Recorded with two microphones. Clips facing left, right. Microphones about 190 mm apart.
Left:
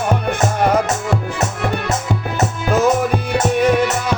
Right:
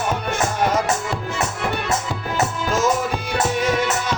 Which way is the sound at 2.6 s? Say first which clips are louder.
Left 7 dB; 60° left (ahead or behind).